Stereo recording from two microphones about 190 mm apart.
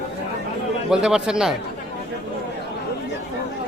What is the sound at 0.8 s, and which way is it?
Speech, 5° right (ahead or behind).